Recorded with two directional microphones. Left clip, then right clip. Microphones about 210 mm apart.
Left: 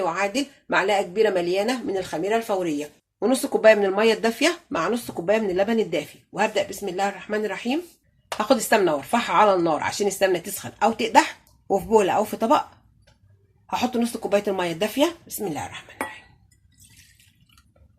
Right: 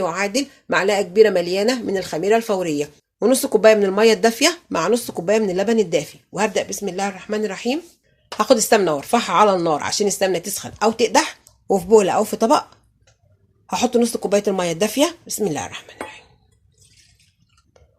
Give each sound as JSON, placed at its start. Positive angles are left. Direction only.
{"t": 0.0, "sound": "speech", "side_deg": -45}
{"t": 13.7, "sound": "speech", "side_deg": -40}